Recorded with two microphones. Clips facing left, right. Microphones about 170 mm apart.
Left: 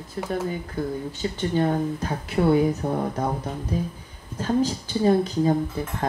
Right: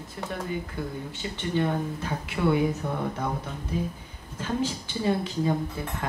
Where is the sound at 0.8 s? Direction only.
40° left (ahead or behind).